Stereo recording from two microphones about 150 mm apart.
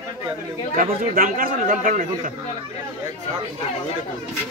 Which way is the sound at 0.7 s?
65° right (ahead or behind).